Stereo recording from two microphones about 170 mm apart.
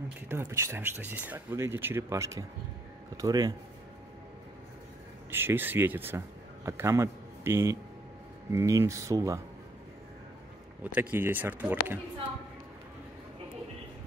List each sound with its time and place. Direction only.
0.3 s speech: 15° right (ahead or behind)
5.3 s speech: 15° right (ahead or behind)
10.8 s speech: 10° right (ahead or behind)